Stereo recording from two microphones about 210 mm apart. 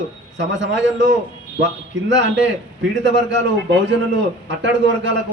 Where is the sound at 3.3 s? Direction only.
55° right (ahead or behind).